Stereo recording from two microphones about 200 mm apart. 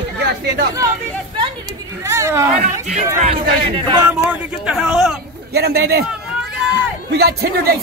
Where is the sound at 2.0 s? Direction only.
15° right (ahead or behind).